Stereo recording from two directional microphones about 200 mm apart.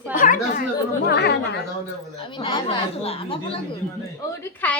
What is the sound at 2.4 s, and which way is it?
Speech, 25° left (ahead or behind).